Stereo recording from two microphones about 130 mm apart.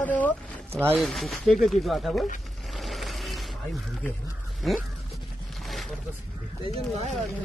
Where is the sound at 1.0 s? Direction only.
Centre (ahead or behind).